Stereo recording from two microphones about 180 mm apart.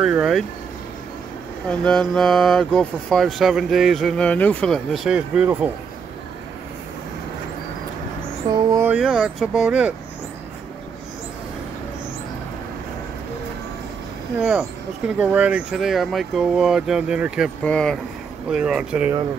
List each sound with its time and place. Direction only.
0.0 s speech: 5° right (ahead or behind)
1.7 s speech: 5° left (ahead or behind)
8.5 s a sound: 15° right (ahead or behind)
8.9 s speech: 5° right (ahead or behind)
14.4 s speech: 5° right (ahead or behind)